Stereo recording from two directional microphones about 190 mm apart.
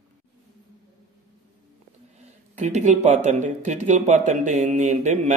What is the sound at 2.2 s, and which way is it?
A man's voice, 40° right (ahead or behind).